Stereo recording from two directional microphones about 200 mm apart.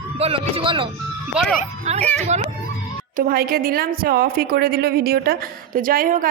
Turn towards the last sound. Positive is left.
turn(degrees=-45)  # may be behind; listen again after turning